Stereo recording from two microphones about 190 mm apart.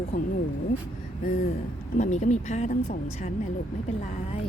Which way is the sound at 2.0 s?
40° left (ahead or behind).